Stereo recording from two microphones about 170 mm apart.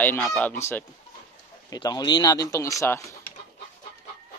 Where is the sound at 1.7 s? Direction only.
20° left (ahead or behind).